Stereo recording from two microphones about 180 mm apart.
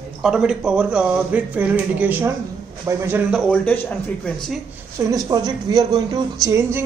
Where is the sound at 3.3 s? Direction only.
5° left (ahead or behind).